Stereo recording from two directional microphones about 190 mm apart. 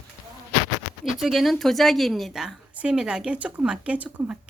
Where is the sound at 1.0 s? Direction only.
Centre (ahead or behind).